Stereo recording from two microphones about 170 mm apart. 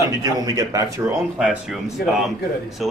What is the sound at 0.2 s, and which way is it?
Speech, 20° right (ahead or behind).